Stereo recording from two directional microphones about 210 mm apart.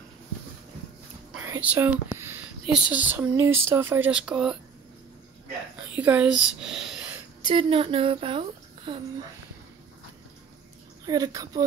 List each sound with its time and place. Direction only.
1.5 s speech: 10° right (ahead or behind)
5.9 s speech: 5° right (ahead or behind)
7.4 s a woman's voice: 25° right (ahead or behind)
11.1 s speech: 15° right (ahead or behind)